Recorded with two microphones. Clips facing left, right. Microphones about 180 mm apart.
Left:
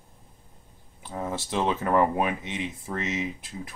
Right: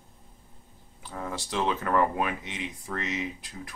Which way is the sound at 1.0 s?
20° left (ahead or behind).